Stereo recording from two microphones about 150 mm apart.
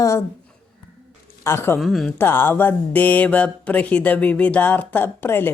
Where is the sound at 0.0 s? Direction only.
20° left (ahead or behind).